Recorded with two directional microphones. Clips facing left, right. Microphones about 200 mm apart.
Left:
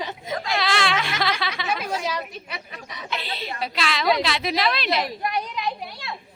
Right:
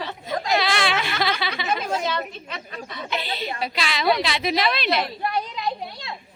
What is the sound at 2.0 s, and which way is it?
Speech, 10° left (ahead or behind).